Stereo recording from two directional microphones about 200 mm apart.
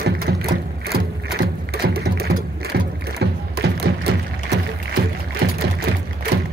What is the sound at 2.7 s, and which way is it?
Music, 50° right (ahead or behind).